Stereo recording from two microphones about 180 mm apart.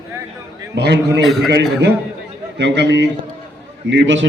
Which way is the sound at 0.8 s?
70° right (ahead or behind).